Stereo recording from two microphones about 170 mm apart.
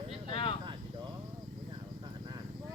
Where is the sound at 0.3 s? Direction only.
30° left (ahead or behind).